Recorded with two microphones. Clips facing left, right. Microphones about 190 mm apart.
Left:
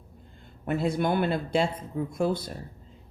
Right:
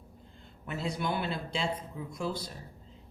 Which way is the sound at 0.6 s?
50° left (ahead or behind).